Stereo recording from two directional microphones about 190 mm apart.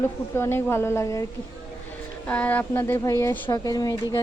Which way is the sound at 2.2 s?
5° left (ahead or behind).